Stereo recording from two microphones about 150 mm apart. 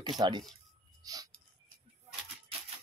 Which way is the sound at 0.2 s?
30° right (ahead or behind).